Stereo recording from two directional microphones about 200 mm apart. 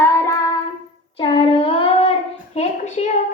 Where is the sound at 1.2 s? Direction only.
25° left (ahead or behind).